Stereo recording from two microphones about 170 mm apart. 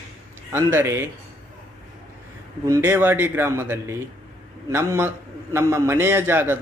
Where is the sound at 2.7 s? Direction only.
15° right (ahead or behind).